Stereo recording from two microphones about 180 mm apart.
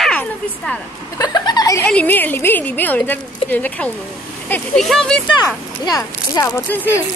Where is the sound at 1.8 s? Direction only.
10° left (ahead or behind).